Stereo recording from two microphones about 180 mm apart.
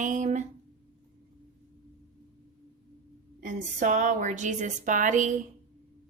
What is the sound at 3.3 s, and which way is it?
A woman's voice, 45° right (ahead or behind).